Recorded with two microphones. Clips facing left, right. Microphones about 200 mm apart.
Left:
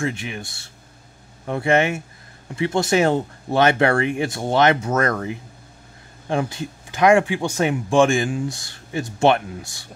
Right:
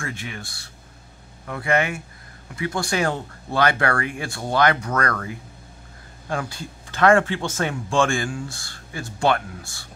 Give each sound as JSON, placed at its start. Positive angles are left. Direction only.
{"t": 0.0, "sound": "speech", "side_deg": 20}